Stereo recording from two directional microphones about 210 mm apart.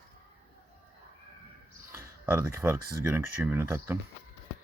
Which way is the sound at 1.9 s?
10° right (ahead or behind).